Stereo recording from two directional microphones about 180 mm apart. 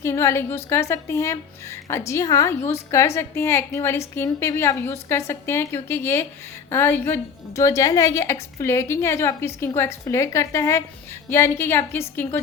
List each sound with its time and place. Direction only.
0.0 s a woman's voice: 15° left (ahead or behind)